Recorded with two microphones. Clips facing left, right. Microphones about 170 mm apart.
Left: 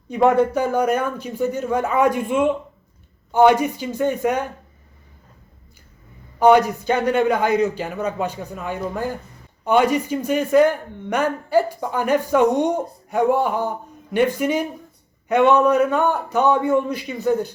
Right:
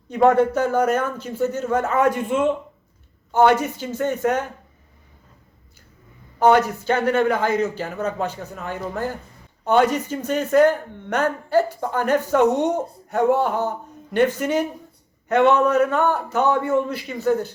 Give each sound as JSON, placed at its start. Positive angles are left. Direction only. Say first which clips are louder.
{"t": 0.2, "sound": "speech", "louder": "even", "side_deg": 10}
{"t": 6.4, "sound": "speech", "louder": "left 2 dB", "side_deg": 15}